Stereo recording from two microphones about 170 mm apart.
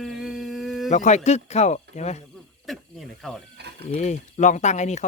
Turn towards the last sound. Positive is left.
turn(degrees=45)  # may be behind; listen again after turning